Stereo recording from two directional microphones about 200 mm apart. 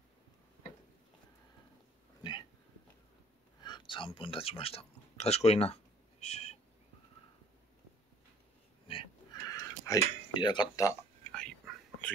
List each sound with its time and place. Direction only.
3.6 s speech: 20° left (ahead or behind)
8.8 s a sound: 25° left (ahead or behind)
11.3 s whispering: 5° left (ahead or behind)